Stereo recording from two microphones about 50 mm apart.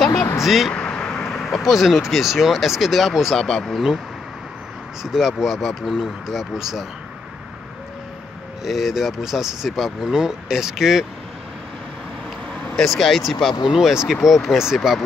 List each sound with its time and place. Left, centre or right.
0.4 s speech: centre
0.7 s vehicle: left
1.2 s speech: centre
3.3 s speech: centre
5.0 s speech: centre
8.6 s speech: centre
12.7 s speech: centre
13.7 s speech: centre